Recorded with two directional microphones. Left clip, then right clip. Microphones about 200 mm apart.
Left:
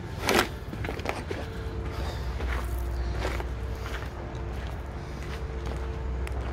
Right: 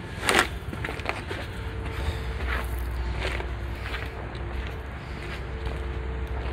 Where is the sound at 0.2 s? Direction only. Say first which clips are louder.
Right 2 dB; 35° left (ahead or behind).